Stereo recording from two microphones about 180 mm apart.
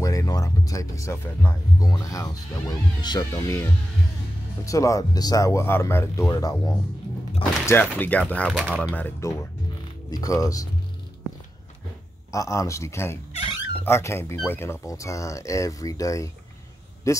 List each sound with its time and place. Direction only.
0.0 s speech: 20° left (ahead or behind)
4.6 s speech: 20° left (ahead or behind)
8.5 s speech: 5° right (ahead or behind)
8.9 s speech: 15° left (ahead or behind)
12.3 s speech: 15° left (ahead or behind)
13.3 s dog: 30° left (ahead or behind)
13.8 s speech: 15° left (ahead or behind)